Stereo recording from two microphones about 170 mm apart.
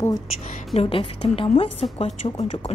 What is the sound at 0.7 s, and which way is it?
Speech, 35° left (ahead or behind).